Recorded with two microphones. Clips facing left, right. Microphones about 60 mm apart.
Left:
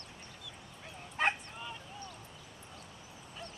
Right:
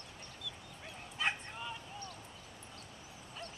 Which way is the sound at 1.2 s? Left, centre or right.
Left.